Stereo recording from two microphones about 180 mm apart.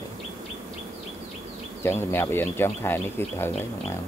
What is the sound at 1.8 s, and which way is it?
Speech, 10° left (ahead or behind).